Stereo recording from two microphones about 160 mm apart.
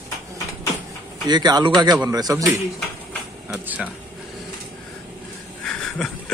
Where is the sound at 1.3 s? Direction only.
25° right (ahead or behind).